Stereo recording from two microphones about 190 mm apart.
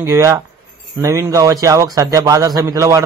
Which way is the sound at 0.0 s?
15° right (ahead or behind).